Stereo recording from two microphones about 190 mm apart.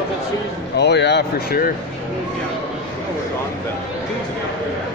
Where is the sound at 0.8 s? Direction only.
65° left (ahead or behind).